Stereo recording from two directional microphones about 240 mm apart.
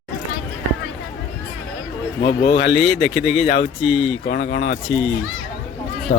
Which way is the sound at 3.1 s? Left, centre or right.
Centre.